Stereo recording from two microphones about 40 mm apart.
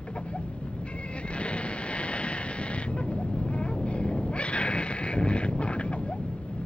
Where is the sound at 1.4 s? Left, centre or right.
Left.